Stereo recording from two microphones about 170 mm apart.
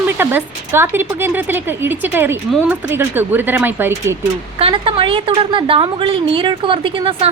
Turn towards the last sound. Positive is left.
turn(degrees=-30)  # may be behind; listen again after turning